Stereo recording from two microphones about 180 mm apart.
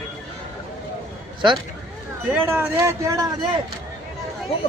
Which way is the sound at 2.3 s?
10° right (ahead or behind).